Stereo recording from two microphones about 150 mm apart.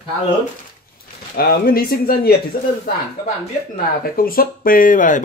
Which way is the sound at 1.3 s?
90° left.